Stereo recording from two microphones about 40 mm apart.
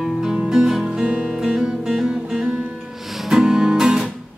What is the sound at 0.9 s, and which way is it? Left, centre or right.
Music, right.